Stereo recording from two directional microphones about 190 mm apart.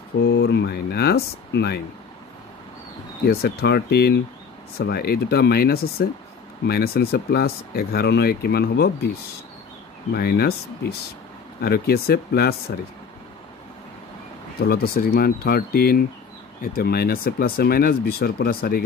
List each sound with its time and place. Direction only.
0.2 s speech: 60° left (ahead or behind)
3.3 s speech: 55° left (ahead or behind)
10.1 s speech: 55° left (ahead or behind)
14.6 s speech: 50° left (ahead or behind)